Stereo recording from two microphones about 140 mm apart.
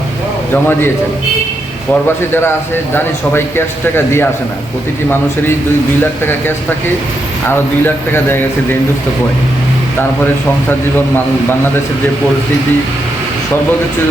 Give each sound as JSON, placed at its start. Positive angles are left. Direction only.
{"t": 0.5, "sound": "speech", "side_deg": 15}
{"t": 1.9, "sound": "speech", "side_deg": 15}